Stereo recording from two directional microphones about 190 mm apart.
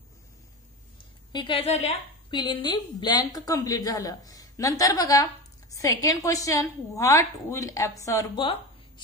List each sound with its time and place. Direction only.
1.3 s a woman's voice: 25° left (ahead or behind)